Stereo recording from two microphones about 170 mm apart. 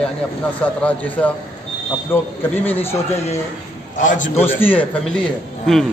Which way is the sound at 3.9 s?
50° left (ahead or behind).